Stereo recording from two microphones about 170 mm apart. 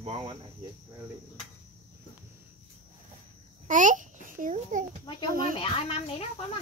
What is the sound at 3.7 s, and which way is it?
A child's voice, 50° right (ahead or behind).